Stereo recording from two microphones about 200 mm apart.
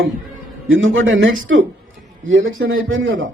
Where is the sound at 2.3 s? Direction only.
85° right.